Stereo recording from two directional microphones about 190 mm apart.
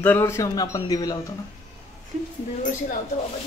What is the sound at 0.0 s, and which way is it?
A man's voice, 10° left (ahead or behind).